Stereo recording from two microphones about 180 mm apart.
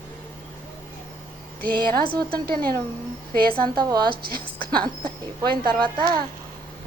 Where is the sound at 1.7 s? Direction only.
55° right (ahead or behind).